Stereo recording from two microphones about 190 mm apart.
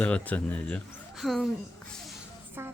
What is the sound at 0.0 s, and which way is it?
Speech, 10° left (ahead or behind).